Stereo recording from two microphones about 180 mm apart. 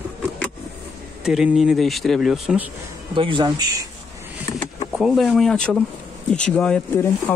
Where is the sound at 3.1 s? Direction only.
30° right (ahead or behind).